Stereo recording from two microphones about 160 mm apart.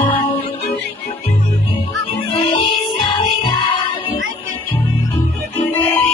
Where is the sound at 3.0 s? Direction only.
30° left (ahead or behind).